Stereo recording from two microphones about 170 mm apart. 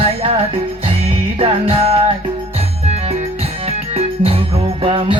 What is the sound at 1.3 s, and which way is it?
Music, 35° right (ahead or behind).